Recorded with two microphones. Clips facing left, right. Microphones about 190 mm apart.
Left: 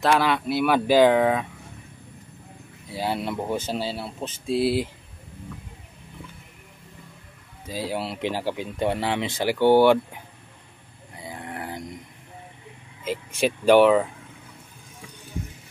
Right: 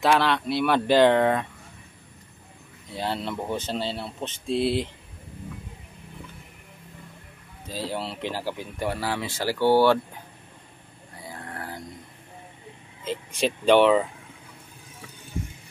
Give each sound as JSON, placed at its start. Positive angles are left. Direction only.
{"t": 0.0, "sound": "speech", "side_deg": 5}
{"t": 2.9, "sound": "speech", "side_deg": 10}
{"t": 7.6, "sound": "speech", "side_deg": 10}
{"t": 11.2, "sound": "livestock", "side_deg": 15}
{"t": 13.0, "sound": "speech", "side_deg": 10}